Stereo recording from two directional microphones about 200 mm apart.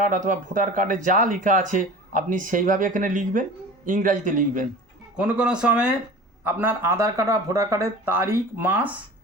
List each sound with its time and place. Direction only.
0.0 s speech: 40° right (ahead or behind)
5.1 s speech: 5° right (ahead or behind)